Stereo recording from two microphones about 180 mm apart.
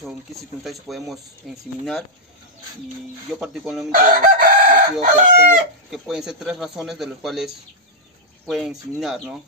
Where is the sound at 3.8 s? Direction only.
50° right (ahead or behind).